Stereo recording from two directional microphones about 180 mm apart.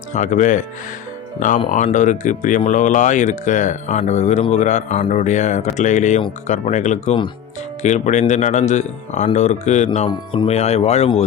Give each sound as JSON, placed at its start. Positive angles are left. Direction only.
{"t": 0.1, "sound": "speech", "side_deg": 40}